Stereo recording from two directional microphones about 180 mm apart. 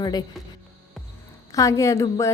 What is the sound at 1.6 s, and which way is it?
Speech, 15° left (ahead or behind).